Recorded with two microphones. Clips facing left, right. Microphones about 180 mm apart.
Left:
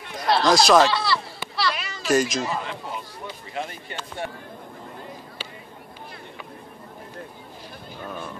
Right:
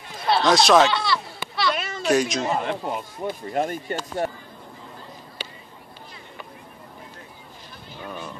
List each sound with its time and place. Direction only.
0.3 s a sound: centre (ahead or behind)
2.0 s speech: centre (ahead or behind)
2.4 s speech: 50° right (ahead or behind)